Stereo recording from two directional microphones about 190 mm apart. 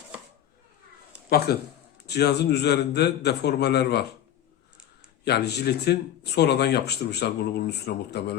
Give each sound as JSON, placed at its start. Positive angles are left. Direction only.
{"t": 1.5, "sound": "speech", "side_deg": 55}
{"t": 5.2, "sound": "speech", "side_deg": 60}